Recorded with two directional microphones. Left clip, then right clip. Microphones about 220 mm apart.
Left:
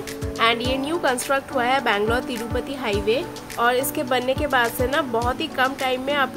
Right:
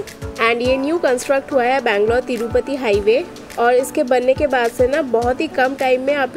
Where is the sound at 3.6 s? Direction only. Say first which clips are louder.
Right 6 dB; 10° right (ahead or behind).